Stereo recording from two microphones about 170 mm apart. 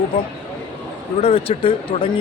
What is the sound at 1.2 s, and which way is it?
Speech, 35° left (ahead or behind).